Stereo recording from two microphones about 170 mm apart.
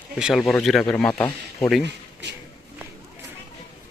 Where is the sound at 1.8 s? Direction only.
90° right.